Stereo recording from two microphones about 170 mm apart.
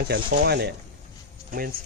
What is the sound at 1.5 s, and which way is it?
Speech, 55° right (ahead or behind).